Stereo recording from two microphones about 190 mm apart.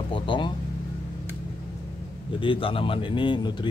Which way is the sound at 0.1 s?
25° left (ahead or behind).